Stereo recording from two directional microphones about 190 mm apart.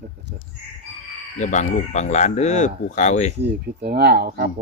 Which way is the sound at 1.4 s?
40° left (ahead or behind).